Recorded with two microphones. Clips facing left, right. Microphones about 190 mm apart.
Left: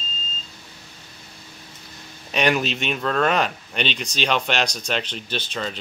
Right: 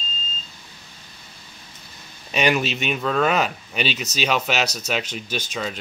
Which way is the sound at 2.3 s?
Centre (ahead or behind).